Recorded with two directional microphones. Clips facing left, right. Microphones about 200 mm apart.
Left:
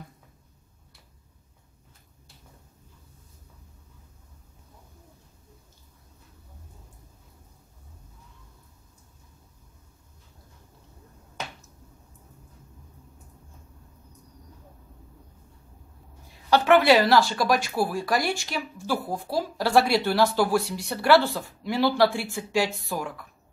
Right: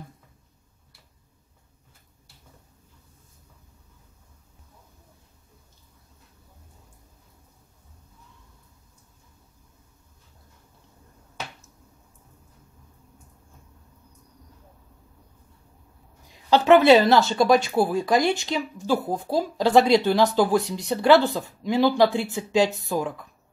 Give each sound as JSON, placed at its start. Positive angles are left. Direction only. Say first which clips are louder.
{"t": 16.4, "sound": "speech", "louder": "right 3 dB", "side_deg": -20}